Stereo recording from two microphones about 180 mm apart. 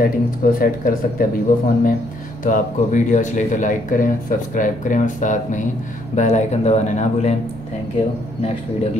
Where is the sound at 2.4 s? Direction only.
45° left (ahead or behind).